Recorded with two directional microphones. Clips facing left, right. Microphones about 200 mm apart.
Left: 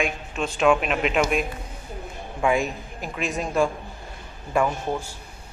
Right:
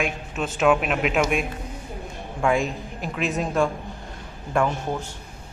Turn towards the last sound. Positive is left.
turn(degrees=5)  # may be behind; listen again after turning